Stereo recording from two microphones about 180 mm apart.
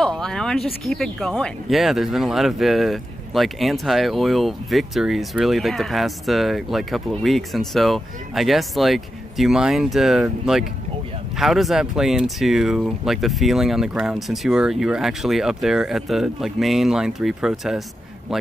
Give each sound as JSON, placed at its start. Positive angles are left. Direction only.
{"t": 0.0, "sound": "speech", "side_deg": 5}